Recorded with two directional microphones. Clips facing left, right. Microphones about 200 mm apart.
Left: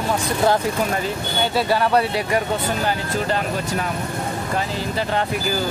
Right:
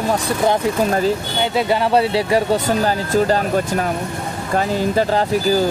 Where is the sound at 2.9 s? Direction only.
40° right (ahead or behind).